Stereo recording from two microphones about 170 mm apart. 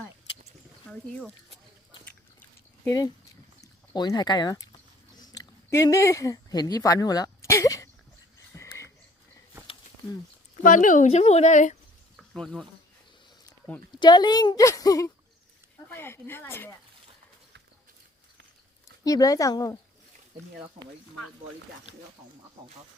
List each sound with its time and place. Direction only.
0.9 s speech: 5° left (ahead or behind)
2.4 s a sound: 20° left (ahead or behind)
10.6 s speech: 50° left (ahead or behind)
12.1 s insect: centre (ahead or behind)
14.0 s a woman's voice: 25° left (ahead or behind)
19.0 s a woman's voice: 20° left (ahead or behind)